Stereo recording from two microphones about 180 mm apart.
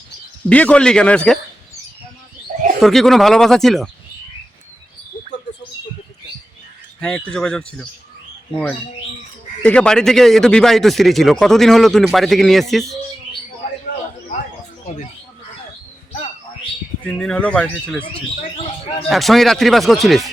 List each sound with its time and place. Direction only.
0.4 s speech: 5° left (ahead or behind)
2.5 s bird: 50° right (ahead or behind)
2.8 s speech: centre (ahead or behind)
7.3 s speech: 5° left (ahead or behind)
9.6 s speech: 5° left (ahead or behind)
17.1 s speech: 5° left (ahead or behind)
18.5 s bird: 30° left (ahead or behind)
19.0 s speech: centre (ahead or behind)